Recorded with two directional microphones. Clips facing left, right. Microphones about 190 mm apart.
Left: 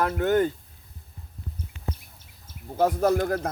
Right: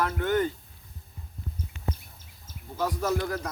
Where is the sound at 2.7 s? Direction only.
55° left (ahead or behind).